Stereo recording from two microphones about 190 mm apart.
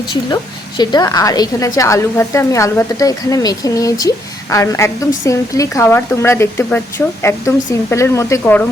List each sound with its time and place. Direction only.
0.8 s a woman's voice: 20° left (ahead or behind)